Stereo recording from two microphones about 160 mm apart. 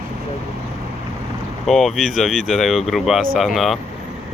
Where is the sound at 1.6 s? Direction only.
Centre (ahead or behind).